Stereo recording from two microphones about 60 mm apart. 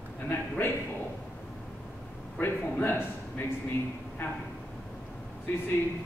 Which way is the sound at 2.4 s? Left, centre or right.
Left.